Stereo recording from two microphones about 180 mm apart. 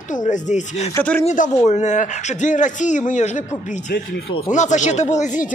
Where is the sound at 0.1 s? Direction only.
45° left (ahead or behind).